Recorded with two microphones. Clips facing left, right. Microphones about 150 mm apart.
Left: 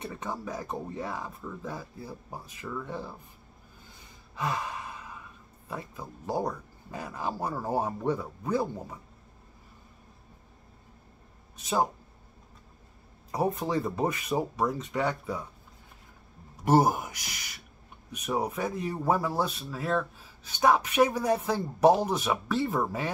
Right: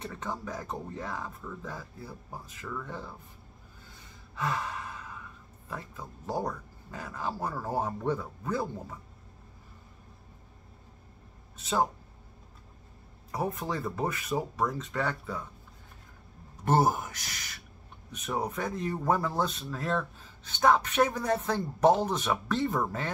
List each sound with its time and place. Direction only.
0.0 s speech: 15° left (ahead or behind)
4.4 s gasp: 15° left (ahead or behind)
5.7 s speech: 15° left (ahead or behind)
11.5 s speech: 15° left (ahead or behind)
13.3 s speech: 20° left (ahead or behind)
16.6 s speech: 10° left (ahead or behind)